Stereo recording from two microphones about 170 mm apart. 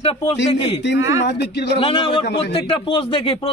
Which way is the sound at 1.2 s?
80° left.